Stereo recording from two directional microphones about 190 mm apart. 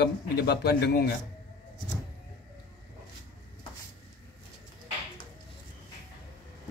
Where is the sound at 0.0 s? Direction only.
60° left (ahead or behind).